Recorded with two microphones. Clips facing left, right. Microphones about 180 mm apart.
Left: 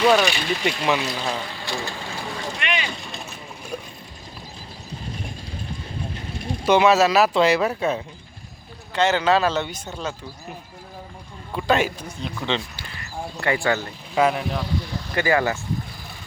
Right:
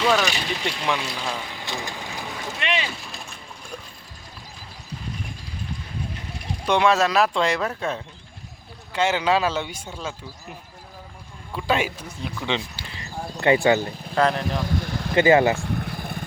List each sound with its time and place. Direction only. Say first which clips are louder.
0.0 s speech: left 4 dB; 15° left (ahead or behind)
1.5 s a sound: left 2 dB; 15° right (ahead or behind)
2.2 s boat: left 4 dB; centre (ahead or behind)
2.6 s vehicle: right 3 dB; 25° right (ahead or behind)
2.9 s a sound: left 3 dB; centre (ahead or behind)
6.7 s speech: left 3 dB; 5° left (ahead or behind)
8.9 s speech: left 2 dB; 10° right (ahead or behind)
11.5 s speech: left 3 dB; 5° right (ahead or behind)
12.5 s speech: left 1 dB; 15° right (ahead or behind)
14.2 s speech: left 1 dB; 5° left (ahead or behind)
14.6 s vehicle: right 2 dB; 50° right (ahead or behind)
15.1 s speech: right 5 dB; 20° right (ahead or behind)
15.5 s vehicle: right 2 dB; 60° right (ahead or behind)